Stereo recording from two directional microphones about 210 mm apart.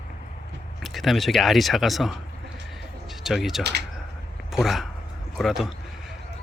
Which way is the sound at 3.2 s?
Centre (ahead or behind).